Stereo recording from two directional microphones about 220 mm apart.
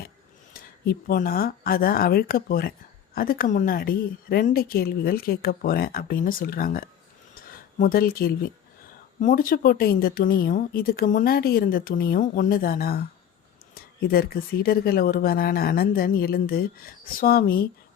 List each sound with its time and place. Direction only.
0.5 s speech: 40° left (ahead or behind)